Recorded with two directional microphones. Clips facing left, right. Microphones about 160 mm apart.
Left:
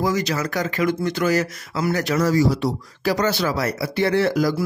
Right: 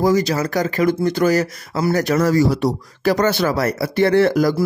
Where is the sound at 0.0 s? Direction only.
35° right (ahead or behind).